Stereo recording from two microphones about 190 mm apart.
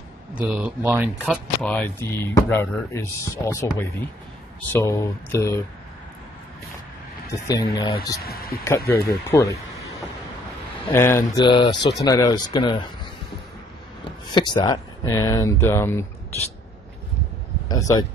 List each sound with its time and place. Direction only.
0.3 s speech: 5° right (ahead or behind)
1.6 s speech: 10° left (ahead or behind)
7.2 s speech: 15° left (ahead or behind)
8.2 s speech: 55° left (ahead or behind)
8.6 s speech: 15° left (ahead or behind)
10.9 s speech: 15° left (ahead or behind)
11.4 s speech: 25° left (ahead or behind)
14.3 s speech: 25° left (ahead or behind)
17.6 s speech: 20° left (ahead or behind)